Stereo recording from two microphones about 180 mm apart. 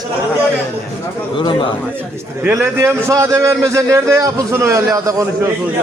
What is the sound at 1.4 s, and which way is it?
Speech, 30° left (ahead or behind).